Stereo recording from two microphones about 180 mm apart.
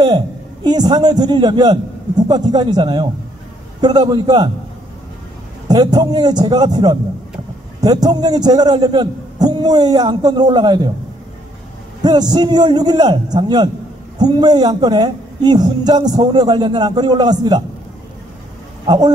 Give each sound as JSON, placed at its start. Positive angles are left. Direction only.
{"t": 0.7, "sound": "a man's voice", "side_deg": -20}
{"t": 5.7, "sound": "a man's voice", "side_deg": -20}
{"t": 12.0, "sound": "a man's voice", "side_deg": -20}
{"t": 18.9, "sound": "a man's voice", "side_deg": -25}